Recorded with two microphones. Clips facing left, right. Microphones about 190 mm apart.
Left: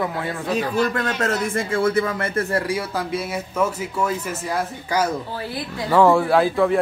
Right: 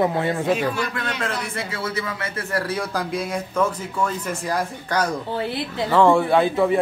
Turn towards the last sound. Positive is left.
turn(degrees=0)  # may be behind; listen again after turning